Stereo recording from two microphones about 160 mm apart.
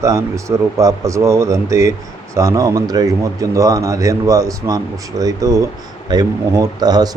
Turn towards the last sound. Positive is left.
turn(degrees=-25)  # may be behind; listen again after turning